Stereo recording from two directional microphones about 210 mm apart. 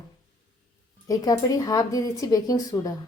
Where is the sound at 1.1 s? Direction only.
15° left (ahead or behind).